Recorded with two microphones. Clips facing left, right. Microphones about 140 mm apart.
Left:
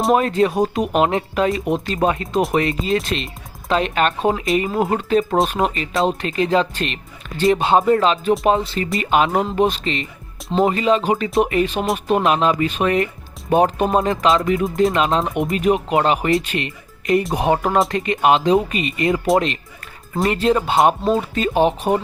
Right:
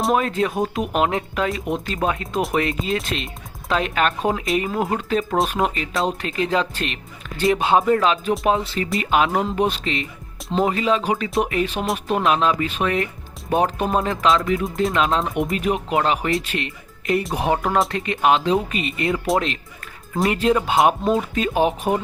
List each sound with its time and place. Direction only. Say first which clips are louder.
0.0 s speech: left 4 dB; centre (ahead or behind)